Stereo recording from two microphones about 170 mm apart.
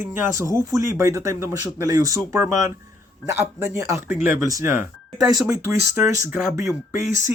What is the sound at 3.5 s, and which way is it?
Speech, 15° right (ahead or behind).